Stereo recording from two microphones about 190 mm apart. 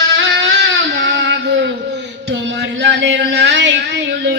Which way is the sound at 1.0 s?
65° right (ahead or behind).